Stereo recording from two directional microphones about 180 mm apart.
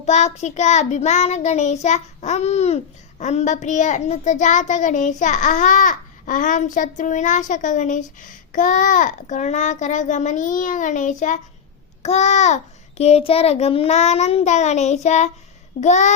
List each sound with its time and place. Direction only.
0.0 s child singing: 40° left (ahead or behind)